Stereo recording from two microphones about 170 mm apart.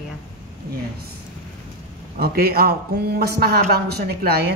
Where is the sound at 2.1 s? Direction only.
65° right (ahead or behind).